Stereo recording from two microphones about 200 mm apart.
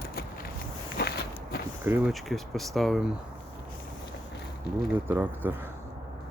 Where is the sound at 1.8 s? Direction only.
10° right (ahead or behind).